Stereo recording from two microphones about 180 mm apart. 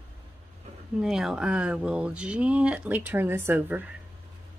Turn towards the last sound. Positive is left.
turn(degrees=-10)  # may be behind; listen again after turning